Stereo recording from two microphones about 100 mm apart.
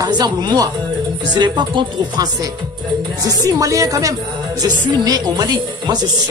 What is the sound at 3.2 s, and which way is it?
Speech, 35° right (ahead or behind).